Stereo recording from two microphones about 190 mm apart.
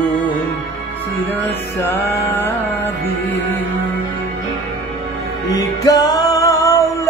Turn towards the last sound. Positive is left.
turn(degrees=15)  # may be behind; listen again after turning